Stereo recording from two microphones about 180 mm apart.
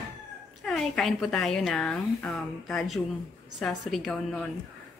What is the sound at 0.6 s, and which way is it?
Speech, centre (ahead or behind).